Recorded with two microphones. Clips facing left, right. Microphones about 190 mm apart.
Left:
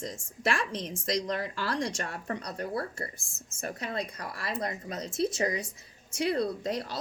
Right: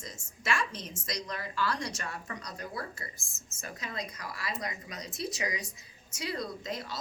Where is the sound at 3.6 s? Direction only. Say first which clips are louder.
Left 6 dB; 55° left (ahead or behind).